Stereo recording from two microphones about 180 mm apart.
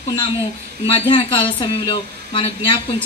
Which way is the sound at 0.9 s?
30° left (ahead or behind).